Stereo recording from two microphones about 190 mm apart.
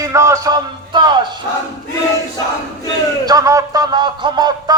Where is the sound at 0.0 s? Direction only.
15° right (ahead or behind).